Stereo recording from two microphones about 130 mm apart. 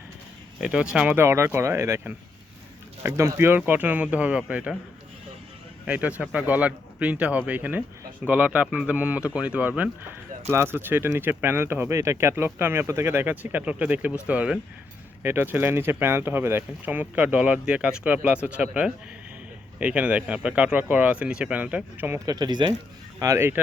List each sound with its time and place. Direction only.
0.6 s speech: 5° right (ahead or behind)
5.8 s speech: 10° right (ahead or behind)
22.3 s speech: 30° right (ahead or behind)
23.2 s speech: 20° right (ahead or behind)